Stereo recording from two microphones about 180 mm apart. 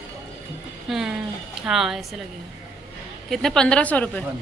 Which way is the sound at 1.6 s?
Centre (ahead or behind).